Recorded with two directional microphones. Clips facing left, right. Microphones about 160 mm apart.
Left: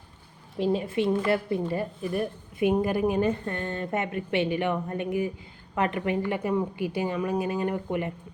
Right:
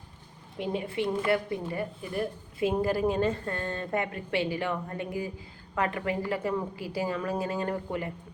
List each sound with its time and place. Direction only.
0.6 s a woman's voice: 25° left (ahead or behind)